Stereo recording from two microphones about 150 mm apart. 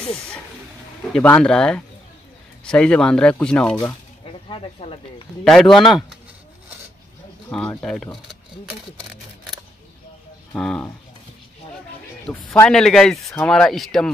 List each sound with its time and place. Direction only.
0.0 s speech: 5° left (ahead or behind)
4.2 s a sound: 40° left (ahead or behind)
5.4 s speech: 5° left (ahead or behind)
5.8 s speech: 30° left (ahead or behind)
7.4 s speech: 5° left (ahead or behind)
10.5 s speech: 10° left (ahead or behind)
12.3 s speech: 10° left (ahead or behind)